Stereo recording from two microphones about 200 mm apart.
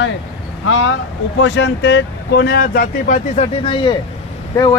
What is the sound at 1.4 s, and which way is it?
Speech, 65° left (ahead or behind).